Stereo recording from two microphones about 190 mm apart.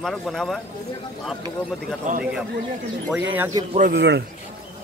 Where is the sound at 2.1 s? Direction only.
40° right (ahead or behind).